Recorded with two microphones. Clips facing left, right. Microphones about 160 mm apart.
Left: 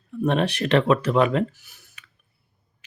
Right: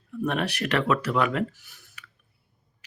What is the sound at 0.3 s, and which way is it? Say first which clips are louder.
Speech: left 6 dB; 30° left (ahead or behind).